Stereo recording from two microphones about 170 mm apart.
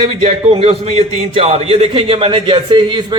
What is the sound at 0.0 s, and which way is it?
A man's voice, 35° right (ahead or behind).